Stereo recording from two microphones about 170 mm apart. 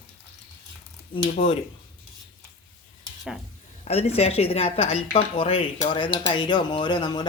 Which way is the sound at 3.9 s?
35° left (ahead or behind).